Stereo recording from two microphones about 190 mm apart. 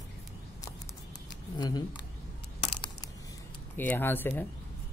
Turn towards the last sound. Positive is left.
turn(degrees=10)  # may be behind; listen again after turning